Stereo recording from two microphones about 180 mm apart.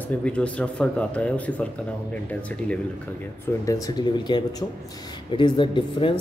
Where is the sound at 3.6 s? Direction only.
20° left (ahead or behind).